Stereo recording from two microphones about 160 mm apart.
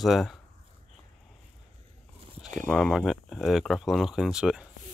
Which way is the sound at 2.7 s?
Centre (ahead or behind).